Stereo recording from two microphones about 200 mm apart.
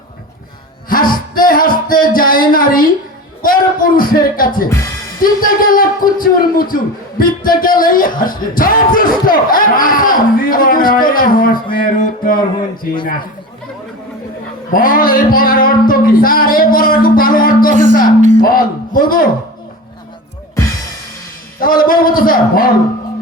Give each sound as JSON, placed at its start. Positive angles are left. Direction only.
{"t": 0.9, "sound": "music", "side_deg": 45}
{"t": 5.2, "sound": "a man's voice", "side_deg": 45}
{"t": 14.7, "sound": "a man's voice", "side_deg": 45}
{"t": 21.6, "sound": "a man's voice", "side_deg": 45}